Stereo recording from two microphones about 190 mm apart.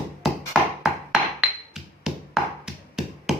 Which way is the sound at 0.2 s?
Centre (ahead or behind).